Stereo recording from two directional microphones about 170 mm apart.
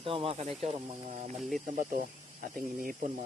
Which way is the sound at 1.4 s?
Centre (ahead or behind).